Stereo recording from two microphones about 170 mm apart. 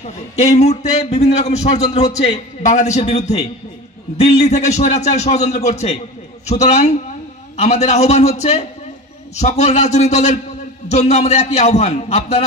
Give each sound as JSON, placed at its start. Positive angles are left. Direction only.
{"t": 0.4, "sound": "a man's voice", "side_deg": 40}